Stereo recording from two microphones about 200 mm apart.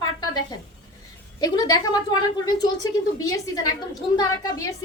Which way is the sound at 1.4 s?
20° left (ahead or behind).